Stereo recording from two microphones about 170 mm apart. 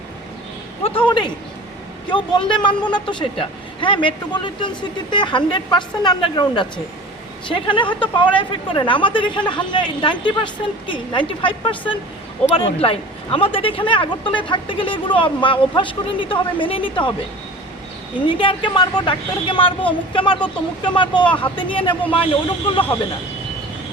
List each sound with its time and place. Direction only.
0.9 s speech: 30° left (ahead or behind)
18.3 s speech: 30° left (ahead or behind)